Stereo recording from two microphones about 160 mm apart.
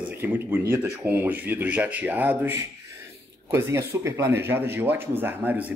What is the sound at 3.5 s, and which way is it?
A man's voice, 15° right (ahead or behind).